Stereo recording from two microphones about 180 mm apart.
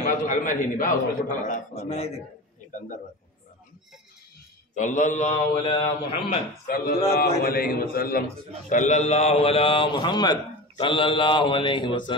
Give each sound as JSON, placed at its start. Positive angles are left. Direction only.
{"t": 0.0, "sound": "a man's voice", "side_deg": 45}
{"t": 2.7, "sound": "a man's voice", "side_deg": 45}
{"t": 4.7, "sound": "a man's voice", "side_deg": 45}